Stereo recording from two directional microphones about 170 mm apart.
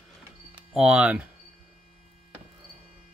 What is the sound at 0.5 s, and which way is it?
Speech, 5° right (ahead or behind).